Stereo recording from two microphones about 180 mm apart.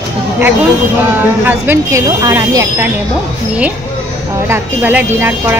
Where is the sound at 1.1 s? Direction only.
10° right (ahead or behind).